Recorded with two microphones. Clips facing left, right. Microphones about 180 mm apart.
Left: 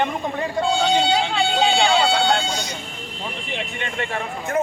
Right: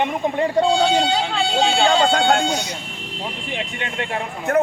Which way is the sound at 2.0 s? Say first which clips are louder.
Right 2 dB; 50° right (ahead or behind).